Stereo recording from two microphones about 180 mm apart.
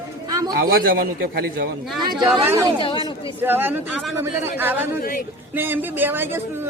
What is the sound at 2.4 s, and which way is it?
Speech, 20° right (ahead or behind).